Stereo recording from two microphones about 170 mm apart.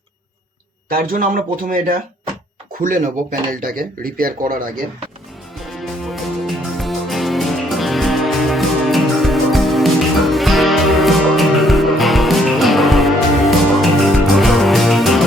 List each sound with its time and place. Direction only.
0.9 s speech: 55° right (ahead or behind)
5.8 s music: centre (ahead or behind)